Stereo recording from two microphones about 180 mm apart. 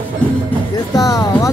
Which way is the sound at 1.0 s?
20° left (ahead or behind).